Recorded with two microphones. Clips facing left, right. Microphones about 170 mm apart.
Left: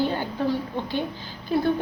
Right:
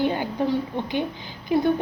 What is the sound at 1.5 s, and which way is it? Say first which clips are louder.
Speech: right 2 dB; 20° right (ahead or behind).